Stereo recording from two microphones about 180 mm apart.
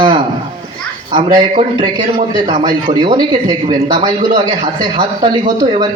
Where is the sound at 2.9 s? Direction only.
25° right (ahead or behind).